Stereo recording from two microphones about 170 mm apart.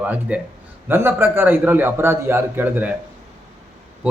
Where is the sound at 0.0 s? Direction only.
10° right (ahead or behind).